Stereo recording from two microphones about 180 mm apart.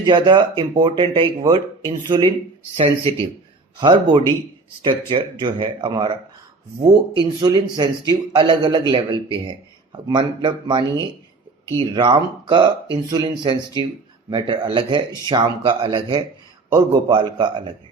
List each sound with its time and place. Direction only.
0.0 s a man's voice: 25° right (ahead or behind)
7.2 s a man's voice: 25° right (ahead or behind)